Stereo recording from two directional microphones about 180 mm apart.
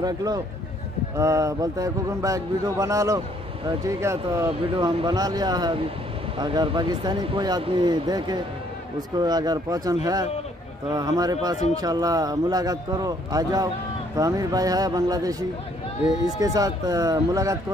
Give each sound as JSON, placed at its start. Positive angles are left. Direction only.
{"t": 0.0, "sound": "speech", "side_deg": -20}
{"t": 11.0, "sound": "speech", "side_deg": -20}
{"t": 16.3, "sound": "speech", "side_deg": -20}